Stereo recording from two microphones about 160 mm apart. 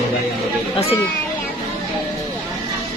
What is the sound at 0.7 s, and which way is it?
Speech, 35° left (ahead or behind).